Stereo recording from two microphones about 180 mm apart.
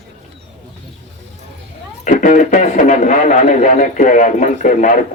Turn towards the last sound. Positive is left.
turn(degrees=45)  # may be behind; listen again after turning